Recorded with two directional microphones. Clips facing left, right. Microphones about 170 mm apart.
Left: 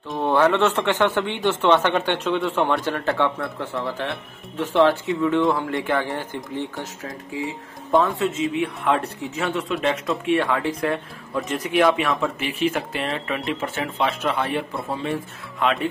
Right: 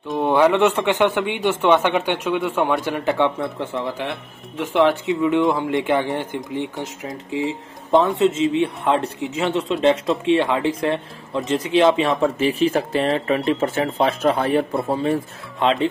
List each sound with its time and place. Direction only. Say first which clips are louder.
0.2 s speech: right 2 dB; 15° right (ahead or behind); by 14.7 s 40° right (ahead or behind)
15.6 s speech: right 4 dB; 25° right (ahead or behind)